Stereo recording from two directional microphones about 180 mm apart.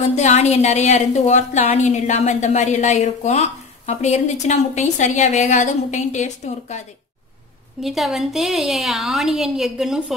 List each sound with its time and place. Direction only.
0.1 s a woman's voice: 40° left (ahead or behind)
7.8 s a woman's voice: centre (ahead or behind)